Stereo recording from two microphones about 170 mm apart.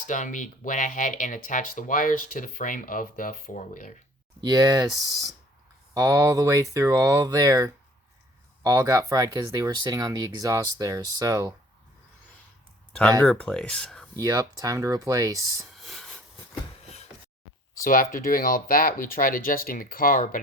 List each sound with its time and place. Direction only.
0.0 s speech: 50° left (ahead or behind)
4.4 s speech: 20° right (ahead or behind)
13.2 s speech: 5° left (ahead or behind)
14.2 s speech: 20° right (ahead or behind)
15.7 s a sound: centre (ahead or behind)
17.8 s speech: 50° left (ahead or behind)